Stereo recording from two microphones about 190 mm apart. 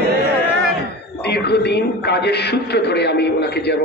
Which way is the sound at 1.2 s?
60° left (ahead or behind).